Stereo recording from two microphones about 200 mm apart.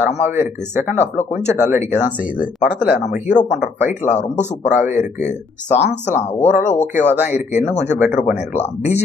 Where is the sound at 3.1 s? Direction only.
40° left (ahead or behind).